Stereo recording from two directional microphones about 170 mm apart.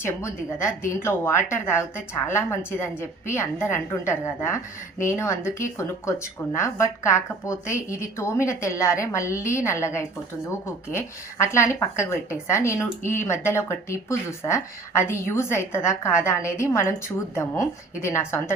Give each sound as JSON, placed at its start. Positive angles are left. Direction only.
{"t": 0.0, "sound": "a woman's voice", "side_deg": 15}